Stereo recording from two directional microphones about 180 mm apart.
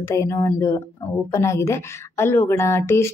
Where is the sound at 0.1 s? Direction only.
15° left (ahead or behind).